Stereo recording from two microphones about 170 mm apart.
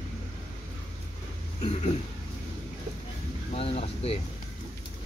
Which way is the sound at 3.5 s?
35° left (ahead or behind).